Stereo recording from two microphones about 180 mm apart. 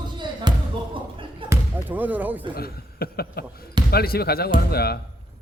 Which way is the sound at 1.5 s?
10° right (ahead or behind).